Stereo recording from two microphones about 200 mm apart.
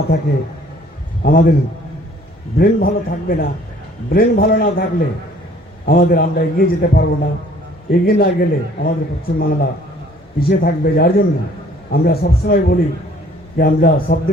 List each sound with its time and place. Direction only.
0.1 s speech: 50° left (ahead or behind)
2.6 s speech: 45° left (ahead or behind)